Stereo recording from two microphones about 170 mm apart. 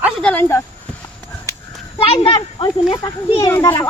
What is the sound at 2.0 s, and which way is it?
A child's voice, 35° left (ahead or behind).